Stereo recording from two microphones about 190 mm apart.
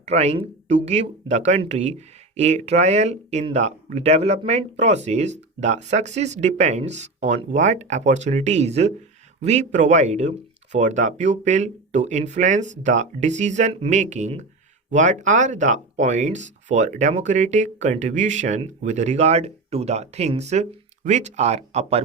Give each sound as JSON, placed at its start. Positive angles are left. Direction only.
{"t": 0.0, "sound": "speech", "side_deg": -35}